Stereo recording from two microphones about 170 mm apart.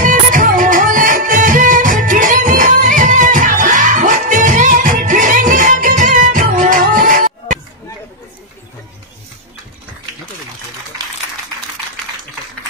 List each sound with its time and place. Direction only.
0.0 s music: 50° right (ahead or behind)